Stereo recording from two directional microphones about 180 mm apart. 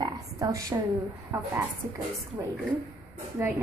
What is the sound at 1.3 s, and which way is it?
Speech, 20° right (ahead or behind).